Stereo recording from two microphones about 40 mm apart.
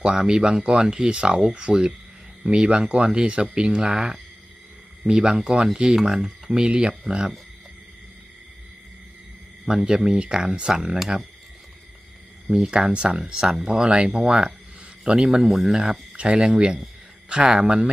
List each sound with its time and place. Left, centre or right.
0.0 s speech: centre
6.0 s speech: centre
6.5 s speech: right
9.6 s speech: centre
12.5 s speech: right
16.1 s speech: right